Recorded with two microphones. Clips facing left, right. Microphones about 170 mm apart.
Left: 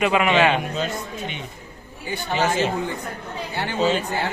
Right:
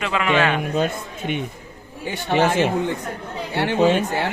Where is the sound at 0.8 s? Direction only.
55° right (ahead or behind).